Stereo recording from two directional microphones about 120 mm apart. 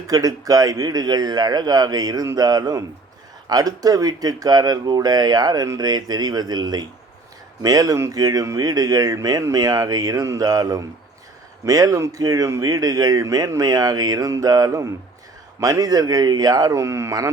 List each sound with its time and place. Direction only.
0.1 s a man's voice: 30° right (ahead or behind)